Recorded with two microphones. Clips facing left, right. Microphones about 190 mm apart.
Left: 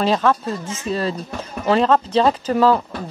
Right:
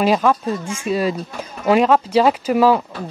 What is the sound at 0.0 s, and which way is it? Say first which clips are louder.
Speech: right 2 dB; 10° right (ahead or behind).